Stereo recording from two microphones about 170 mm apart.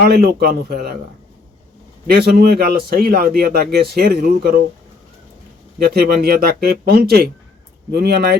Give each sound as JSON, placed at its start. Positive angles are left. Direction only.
{"t": 0.0, "sound": "a man's voice", "side_deg": -65}
{"t": 2.0, "sound": "a man's voice", "side_deg": -65}
{"t": 5.9, "sound": "a man's voice", "side_deg": -65}